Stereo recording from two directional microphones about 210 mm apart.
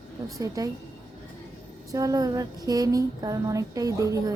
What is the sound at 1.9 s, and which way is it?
Speech, 15° right (ahead or behind).